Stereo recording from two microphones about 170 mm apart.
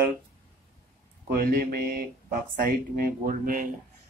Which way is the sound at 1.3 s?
60° right (ahead or behind).